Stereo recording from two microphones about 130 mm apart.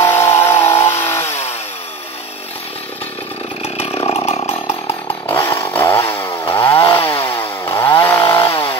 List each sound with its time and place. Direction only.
0.0 s chainsaw: 20° left (ahead or behind)
3.6 s chainsaw: 50° left (ahead or behind)
5.3 s chainsaw: 20° left (ahead or behind)